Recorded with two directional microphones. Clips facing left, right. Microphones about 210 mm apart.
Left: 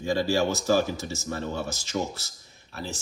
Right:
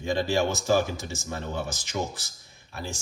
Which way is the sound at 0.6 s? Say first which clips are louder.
Left 1 dB; 15° right (ahead or behind).